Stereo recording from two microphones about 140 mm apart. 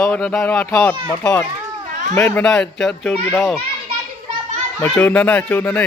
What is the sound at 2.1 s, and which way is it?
A child's voice, 15° left (ahead or behind).